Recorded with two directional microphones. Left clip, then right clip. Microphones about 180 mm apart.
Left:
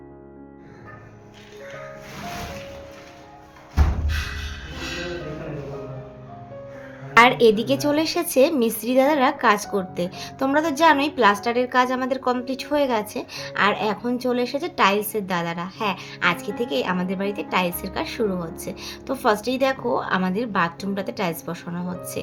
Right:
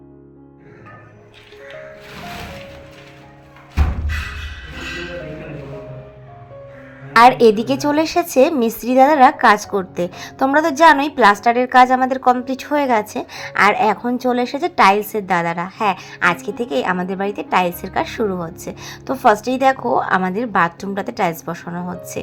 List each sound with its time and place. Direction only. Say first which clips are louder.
7.2 s a woman's voice: right 5 dB; 25° right (ahead or behind)